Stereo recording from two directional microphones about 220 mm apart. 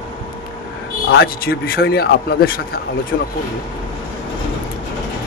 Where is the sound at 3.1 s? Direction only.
55° left (ahead or behind).